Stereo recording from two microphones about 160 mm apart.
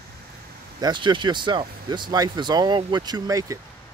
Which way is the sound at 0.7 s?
25° right (ahead or behind).